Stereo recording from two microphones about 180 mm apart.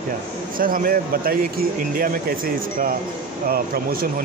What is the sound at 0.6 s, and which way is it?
Speech, 50° right (ahead or behind).